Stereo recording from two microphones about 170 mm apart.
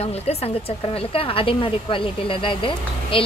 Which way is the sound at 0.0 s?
35° left (ahead or behind).